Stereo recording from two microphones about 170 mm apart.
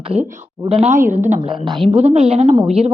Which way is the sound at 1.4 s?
25° right (ahead or behind).